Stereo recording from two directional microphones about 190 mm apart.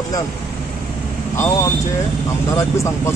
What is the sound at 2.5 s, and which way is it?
Speech, 15° left (ahead or behind).